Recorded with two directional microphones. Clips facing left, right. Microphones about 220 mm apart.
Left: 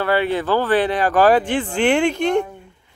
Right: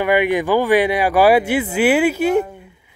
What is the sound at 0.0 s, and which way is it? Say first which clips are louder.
Speech: right 3 dB; 15° right (ahead or behind).